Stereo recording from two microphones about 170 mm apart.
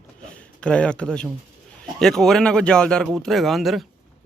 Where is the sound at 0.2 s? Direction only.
5° left (ahead or behind).